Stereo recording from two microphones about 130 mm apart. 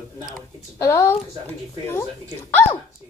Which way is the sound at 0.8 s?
20° left (ahead or behind).